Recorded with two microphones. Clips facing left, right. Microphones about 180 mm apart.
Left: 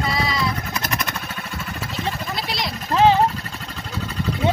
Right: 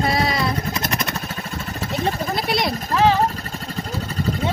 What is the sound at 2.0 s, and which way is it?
Vehicle, 55° right (ahead or behind).